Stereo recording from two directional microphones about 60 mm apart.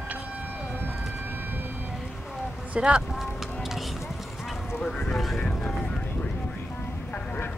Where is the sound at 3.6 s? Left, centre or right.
Centre.